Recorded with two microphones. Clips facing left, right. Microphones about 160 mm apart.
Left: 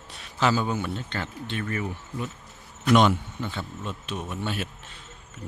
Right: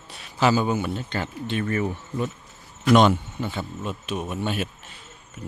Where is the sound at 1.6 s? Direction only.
35° right (ahead or behind).